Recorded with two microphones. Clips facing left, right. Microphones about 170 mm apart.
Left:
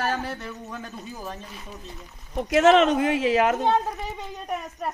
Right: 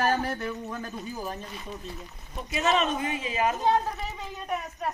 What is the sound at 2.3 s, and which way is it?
Speech, 90° left.